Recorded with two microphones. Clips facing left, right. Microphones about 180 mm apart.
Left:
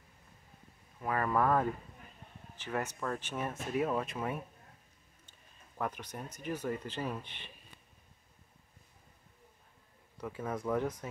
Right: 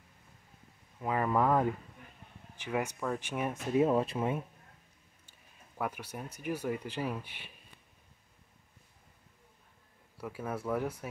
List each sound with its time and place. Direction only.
1.0 s speech: 15° right (ahead or behind)
3.7 s speech: 25° right (ahead or behind)
5.8 s speech: 10° right (ahead or behind)
10.1 s speech: 5° right (ahead or behind)